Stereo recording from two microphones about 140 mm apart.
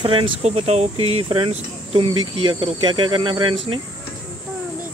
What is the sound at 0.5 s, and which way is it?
Speech, 50° right (ahead or behind).